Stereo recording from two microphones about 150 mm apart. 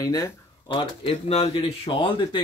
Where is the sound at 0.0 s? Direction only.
20° left (ahead or behind).